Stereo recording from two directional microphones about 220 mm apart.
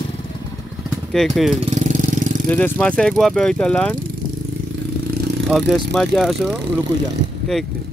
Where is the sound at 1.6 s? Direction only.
35° right (ahead or behind).